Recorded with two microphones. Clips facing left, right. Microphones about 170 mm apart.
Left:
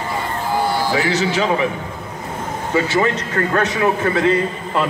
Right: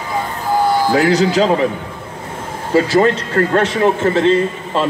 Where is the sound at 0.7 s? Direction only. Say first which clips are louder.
Right 5 dB; 50° right (ahead or behind).